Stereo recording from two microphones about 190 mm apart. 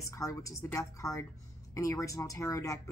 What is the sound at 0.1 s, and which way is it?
Speech, 15° left (ahead or behind).